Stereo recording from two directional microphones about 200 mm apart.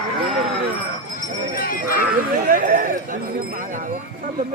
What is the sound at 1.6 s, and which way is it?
Speech, 45° left (ahead or behind).